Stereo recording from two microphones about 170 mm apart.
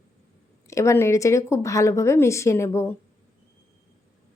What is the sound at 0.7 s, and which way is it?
A woman's voice, 15° left (ahead or behind).